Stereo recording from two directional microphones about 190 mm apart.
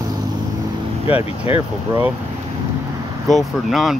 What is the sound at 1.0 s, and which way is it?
Speech, 30° left (ahead or behind).